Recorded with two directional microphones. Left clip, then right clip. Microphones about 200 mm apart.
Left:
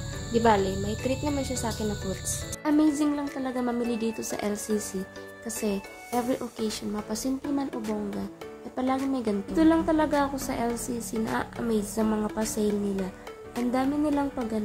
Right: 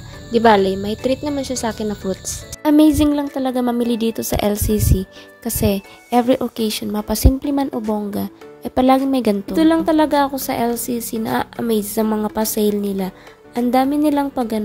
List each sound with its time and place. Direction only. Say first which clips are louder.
0.3 s a woman's voice: right 10 dB; 35° right (ahead or behind)
8.7 s a woman's voice: right 13 dB; 45° right (ahead or behind)